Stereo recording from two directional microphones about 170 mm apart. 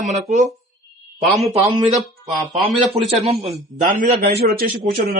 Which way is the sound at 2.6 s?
35° right (ahead or behind).